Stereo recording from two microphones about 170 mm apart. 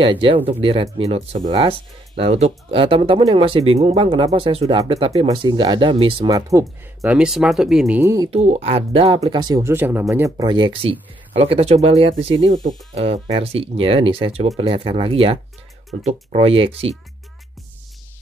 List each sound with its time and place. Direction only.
0.0 s speech: 30° right (ahead or behind)
6.5 s speech: 20° right (ahead or behind)
7.0 s speech: 5° right (ahead or behind)
8.0 s speech: 15° right (ahead or behind)
8.3 s speech: 40° right (ahead or behind)